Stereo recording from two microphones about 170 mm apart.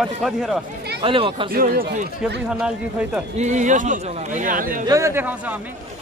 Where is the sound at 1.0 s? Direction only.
30° right (ahead or behind).